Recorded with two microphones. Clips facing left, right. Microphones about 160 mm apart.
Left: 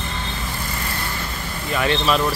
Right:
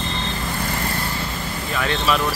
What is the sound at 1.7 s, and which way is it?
Speech, 5° left (ahead or behind).